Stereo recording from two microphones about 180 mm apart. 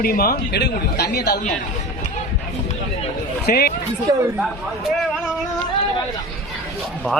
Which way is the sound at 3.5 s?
60° left (ahead or behind).